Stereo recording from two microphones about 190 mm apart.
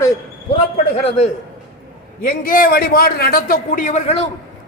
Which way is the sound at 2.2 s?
50° left (ahead or behind).